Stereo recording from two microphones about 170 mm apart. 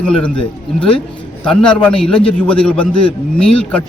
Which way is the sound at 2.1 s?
30° left (ahead or behind).